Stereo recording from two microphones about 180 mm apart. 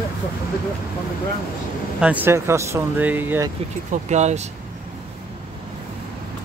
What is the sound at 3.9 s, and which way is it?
Speech, 40° right (ahead or behind).